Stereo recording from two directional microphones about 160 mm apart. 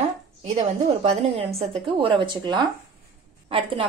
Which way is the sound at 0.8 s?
40° right (ahead or behind).